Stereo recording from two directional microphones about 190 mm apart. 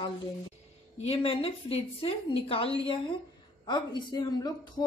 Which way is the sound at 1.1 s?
30° left (ahead or behind).